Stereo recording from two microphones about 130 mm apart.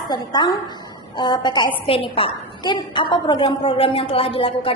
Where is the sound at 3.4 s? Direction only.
50° left (ahead or behind).